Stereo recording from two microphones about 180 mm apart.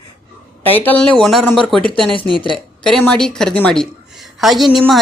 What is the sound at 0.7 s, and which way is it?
A woman's voice, 10° left (ahead or behind).